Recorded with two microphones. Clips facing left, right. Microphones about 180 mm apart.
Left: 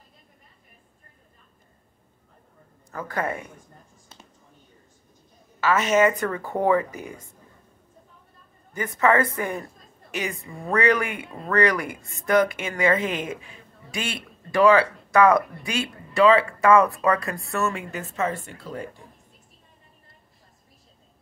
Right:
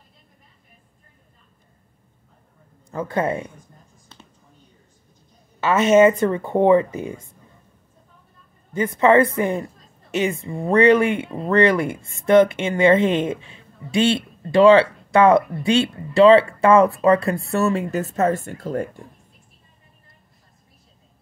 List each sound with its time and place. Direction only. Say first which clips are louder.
2.9 s speech: right 6 dB; 25° right (ahead or behind)
5.6 s speech: right 6 dB; 25° right (ahead or behind)
8.7 s speech: right 6 dB; 20° right (ahead or behind); by 18.9 s 50° right (ahead or behind)